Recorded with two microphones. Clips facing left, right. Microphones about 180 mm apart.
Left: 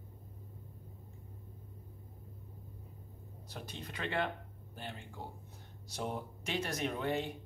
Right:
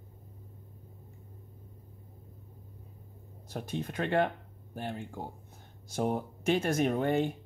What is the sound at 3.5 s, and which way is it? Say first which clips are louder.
Speech: right 10 dB; 50° right (ahead or behind).